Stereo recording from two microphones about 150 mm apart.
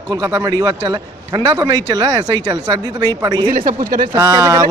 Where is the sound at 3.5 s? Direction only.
65° right (ahead or behind).